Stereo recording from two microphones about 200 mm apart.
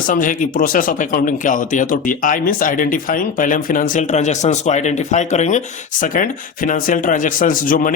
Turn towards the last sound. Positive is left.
turn(degrees=45)  # may be behind; listen again after turning